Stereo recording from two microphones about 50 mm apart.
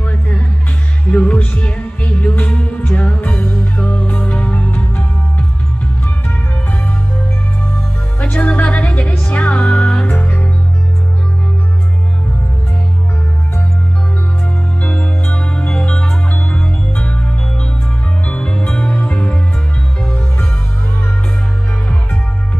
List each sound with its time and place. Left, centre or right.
1.1 s music: left
8.2 s music: left
14.8 s music: left
18.2 s music: left